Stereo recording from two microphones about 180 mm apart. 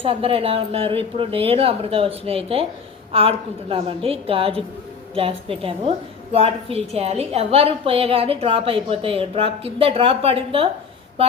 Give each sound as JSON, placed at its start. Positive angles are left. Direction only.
{"t": 0.0, "sound": "a woman's voice", "side_deg": -30}